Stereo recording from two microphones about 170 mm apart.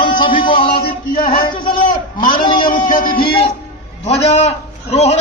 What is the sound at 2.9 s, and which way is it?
Music, 55° left (ahead or behind).